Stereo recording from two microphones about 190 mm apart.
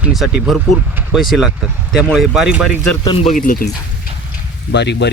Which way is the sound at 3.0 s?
30° left (ahead or behind).